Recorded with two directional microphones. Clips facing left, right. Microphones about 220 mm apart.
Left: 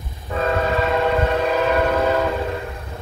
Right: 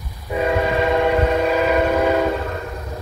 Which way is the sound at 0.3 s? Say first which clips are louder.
Right 2 dB; 10° right (ahead or behind).